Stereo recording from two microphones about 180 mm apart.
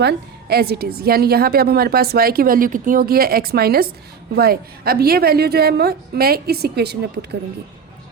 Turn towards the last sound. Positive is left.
turn(degrees=-65)  # may be behind; listen again after turning